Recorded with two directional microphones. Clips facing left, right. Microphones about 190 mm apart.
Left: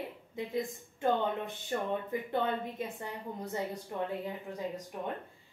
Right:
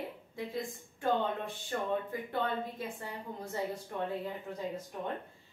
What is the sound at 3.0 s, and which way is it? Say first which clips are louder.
Speech: left 2 dB; 20° left (ahead or behind).